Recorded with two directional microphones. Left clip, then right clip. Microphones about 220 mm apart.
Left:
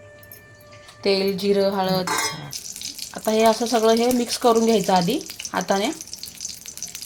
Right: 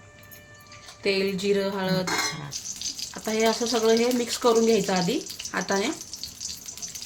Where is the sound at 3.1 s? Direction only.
20° left (ahead or behind).